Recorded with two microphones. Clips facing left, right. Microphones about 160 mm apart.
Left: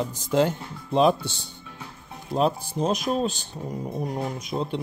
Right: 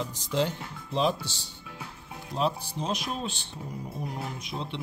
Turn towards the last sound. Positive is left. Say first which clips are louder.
# left 7 dB
turn(degrees=45)  # may be behind; listen again after turning